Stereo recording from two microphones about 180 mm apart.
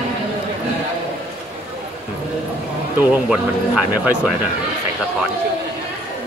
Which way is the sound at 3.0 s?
5° right (ahead or behind).